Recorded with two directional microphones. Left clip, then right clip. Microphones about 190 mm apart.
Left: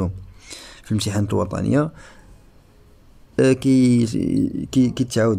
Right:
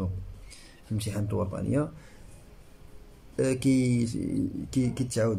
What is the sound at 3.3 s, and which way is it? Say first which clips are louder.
Speech: left 9 dB; 40° left (ahead or behind).